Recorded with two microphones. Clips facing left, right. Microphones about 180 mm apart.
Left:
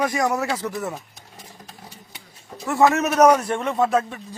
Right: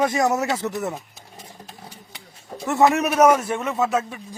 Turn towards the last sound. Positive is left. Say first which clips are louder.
# left 2 dB
turn(degrees=-5)  # may be behind; listen again after turning